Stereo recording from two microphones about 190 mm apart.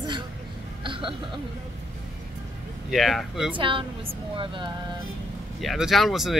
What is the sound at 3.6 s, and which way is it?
A woman's voice, 25° right (ahead or behind).